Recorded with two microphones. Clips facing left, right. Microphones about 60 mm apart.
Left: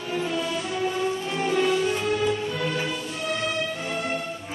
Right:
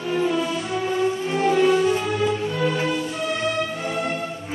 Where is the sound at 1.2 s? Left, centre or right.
Centre.